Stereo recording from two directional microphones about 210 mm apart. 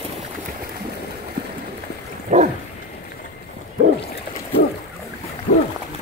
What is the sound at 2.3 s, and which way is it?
Dog, 35° right (ahead or behind).